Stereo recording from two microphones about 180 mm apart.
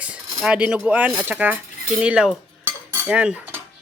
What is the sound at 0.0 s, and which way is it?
Speech, 5° right (ahead or behind).